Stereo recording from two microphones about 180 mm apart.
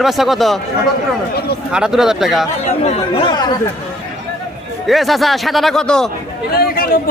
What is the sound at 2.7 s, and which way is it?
Speech, 35° left (ahead or behind).